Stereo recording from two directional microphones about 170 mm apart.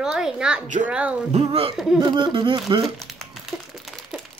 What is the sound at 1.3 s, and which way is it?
Speech, 35° right (ahead or behind).